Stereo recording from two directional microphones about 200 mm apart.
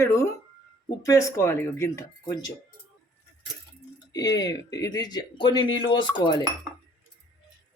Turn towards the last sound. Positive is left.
turn(degrees=25)  # may be behind; listen again after turning